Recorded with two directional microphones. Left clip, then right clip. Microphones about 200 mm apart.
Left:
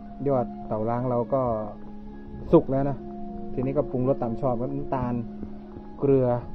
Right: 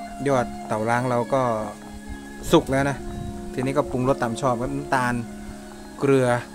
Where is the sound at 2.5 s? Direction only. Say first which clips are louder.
Right 2 dB; 15° right (ahead or behind).